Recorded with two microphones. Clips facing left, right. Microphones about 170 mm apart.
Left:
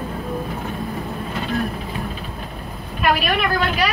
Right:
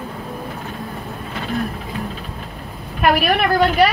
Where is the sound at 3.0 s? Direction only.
60° right (ahead or behind).